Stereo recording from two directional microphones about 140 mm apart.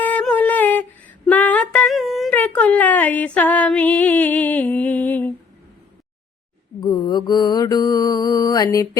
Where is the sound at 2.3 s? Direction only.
10° left (ahead or behind).